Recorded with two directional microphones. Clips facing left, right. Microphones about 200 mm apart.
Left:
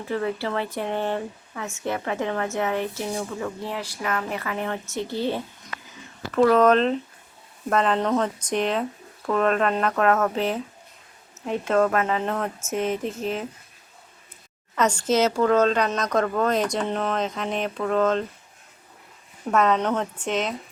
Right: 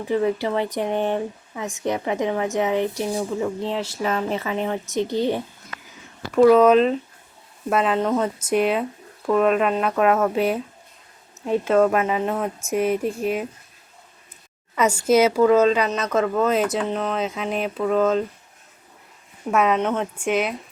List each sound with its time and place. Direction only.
0.0 s speech: 15° right (ahead or behind)
11.6 s speech: 5° right (ahead or behind)
14.8 s speech: 10° right (ahead or behind)
19.5 s speech: 10° right (ahead or behind)